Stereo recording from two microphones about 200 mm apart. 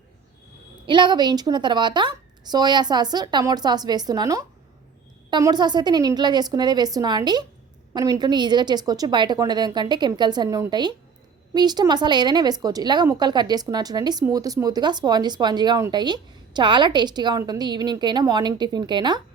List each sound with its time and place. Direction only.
0.9 s speech: 25° right (ahead or behind)